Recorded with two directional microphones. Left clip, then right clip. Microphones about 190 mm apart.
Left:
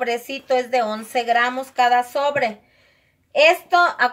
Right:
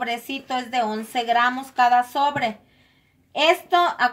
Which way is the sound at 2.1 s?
30° left (ahead or behind).